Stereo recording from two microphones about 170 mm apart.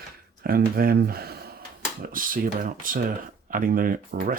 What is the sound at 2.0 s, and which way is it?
Speech, 55° right (ahead or behind).